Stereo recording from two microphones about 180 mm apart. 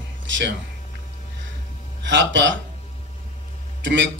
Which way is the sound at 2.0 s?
90° right.